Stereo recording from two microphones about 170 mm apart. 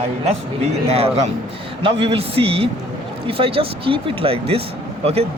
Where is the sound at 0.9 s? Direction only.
35° right (ahead or behind).